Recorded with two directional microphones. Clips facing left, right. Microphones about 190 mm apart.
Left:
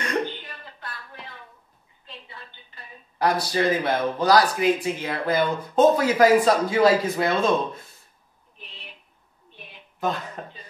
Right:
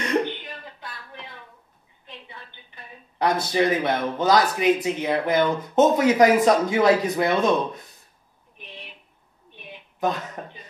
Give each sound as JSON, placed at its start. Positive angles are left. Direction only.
{"t": 2.0, "sound": "a woman's voice", "side_deg": -20}
{"t": 9.9, "sound": "speech", "side_deg": -20}